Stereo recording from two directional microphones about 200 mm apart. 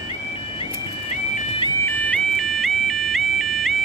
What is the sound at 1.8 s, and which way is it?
Ringtone, 5° left (ahead or behind).